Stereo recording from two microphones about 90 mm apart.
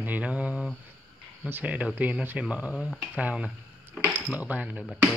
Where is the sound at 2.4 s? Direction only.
15° right (ahead or behind).